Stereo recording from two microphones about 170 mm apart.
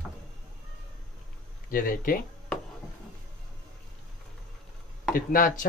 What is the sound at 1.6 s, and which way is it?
Speech, 55° left (ahead or behind).